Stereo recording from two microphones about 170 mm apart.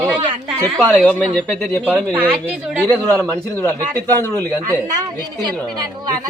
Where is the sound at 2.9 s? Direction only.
10° left (ahead or behind).